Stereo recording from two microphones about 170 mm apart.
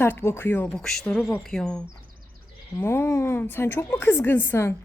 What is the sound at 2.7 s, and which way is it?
A woman's voice, 15° left (ahead or behind).